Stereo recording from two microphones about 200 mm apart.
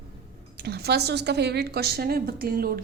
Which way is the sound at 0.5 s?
55° right (ahead or behind).